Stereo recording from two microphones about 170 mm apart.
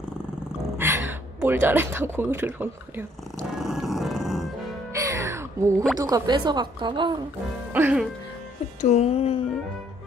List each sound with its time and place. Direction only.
0.7 s speech: 15° right (ahead or behind)
3.3 s dog: centre (ahead or behind)
4.9 s music: 20° right (ahead or behind)
5.9 s a woman's voice: 20° right (ahead or behind)
7.7 s speech: 10° right (ahead or behind)
8.8 s speech: 40° left (ahead or behind)